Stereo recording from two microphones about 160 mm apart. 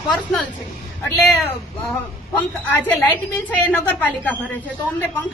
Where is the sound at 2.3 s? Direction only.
10° left (ahead or behind).